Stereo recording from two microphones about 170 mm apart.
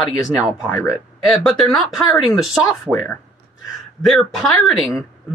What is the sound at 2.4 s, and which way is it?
Speech, centre (ahead or behind).